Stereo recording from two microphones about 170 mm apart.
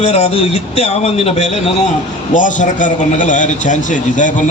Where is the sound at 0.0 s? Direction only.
40° left (ahead or behind).